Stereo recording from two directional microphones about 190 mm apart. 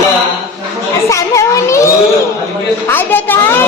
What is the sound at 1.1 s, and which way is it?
Children playing, 15° left (ahead or behind).